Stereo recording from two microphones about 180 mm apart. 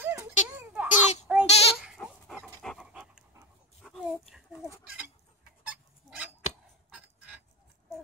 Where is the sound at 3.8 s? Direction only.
Centre (ahead or behind).